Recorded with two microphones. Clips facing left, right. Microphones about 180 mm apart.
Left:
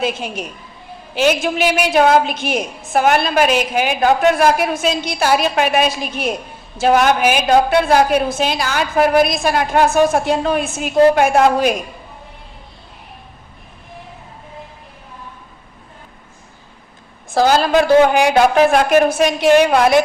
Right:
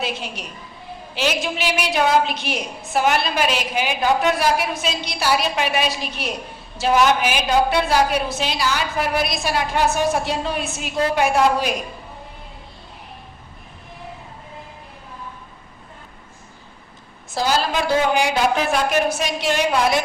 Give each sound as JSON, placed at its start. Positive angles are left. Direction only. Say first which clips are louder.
{"t": 0.0, "sound": "a woman's voice", "louder": "left 6 dB", "side_deg": 50}
{"t": 17.3, "sound": "a woman's voice", "louder": "left 8 dB", "side_deg": 55}